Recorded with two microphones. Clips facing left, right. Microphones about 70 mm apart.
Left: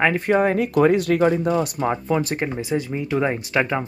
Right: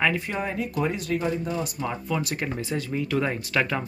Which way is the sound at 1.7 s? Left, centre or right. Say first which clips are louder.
Left 7 dB; left.